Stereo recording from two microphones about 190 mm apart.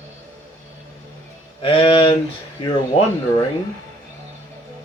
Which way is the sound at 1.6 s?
25° left (ahead or behind).